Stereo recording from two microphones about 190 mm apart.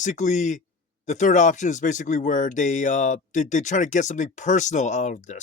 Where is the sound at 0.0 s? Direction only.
40° left (ahead or behind).